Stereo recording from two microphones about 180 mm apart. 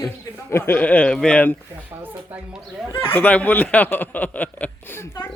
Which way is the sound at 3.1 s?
10° left (ahead or behind).